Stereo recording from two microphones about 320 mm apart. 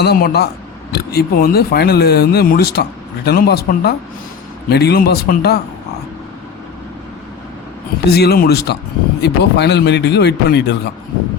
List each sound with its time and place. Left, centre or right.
0.0 s speech: left
8.1 s a man's voice: left